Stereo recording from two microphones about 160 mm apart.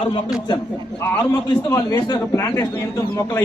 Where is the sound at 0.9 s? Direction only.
15° left (ahead or behind).